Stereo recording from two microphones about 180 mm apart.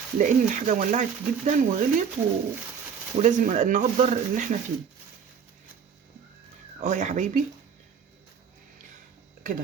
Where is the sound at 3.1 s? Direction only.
40° right (ahead or behind).